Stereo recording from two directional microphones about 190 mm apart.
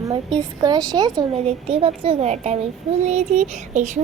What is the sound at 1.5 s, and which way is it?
A child's voice, 30° right (ahead or behind).